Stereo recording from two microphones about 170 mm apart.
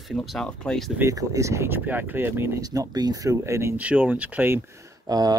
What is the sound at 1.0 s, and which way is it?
Speech, 20° right (ahead or behind).